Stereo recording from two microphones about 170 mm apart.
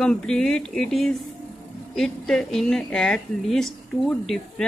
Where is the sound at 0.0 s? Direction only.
5° left (ahead or behind).